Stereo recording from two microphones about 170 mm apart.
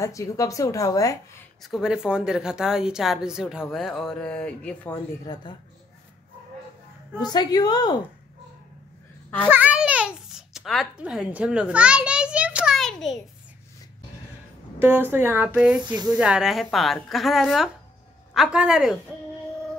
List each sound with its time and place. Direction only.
0.0 s a woman's voice: 20° left (ahead or behind)
1.6 s a woman's voice: centre (ahead or behind)
5.2 s a woman's voice: 25° left (ahead or behind)
7.2 s a woman's voice: 25° left (ahead or behind)
9.5 s babbling: 10° right (ahead or behind)
14.8 s a woman's voice: 10° right (ahead or behind)